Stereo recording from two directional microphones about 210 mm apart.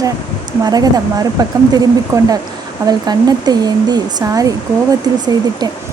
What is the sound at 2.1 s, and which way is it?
Speech, 15° right (ahead or behind).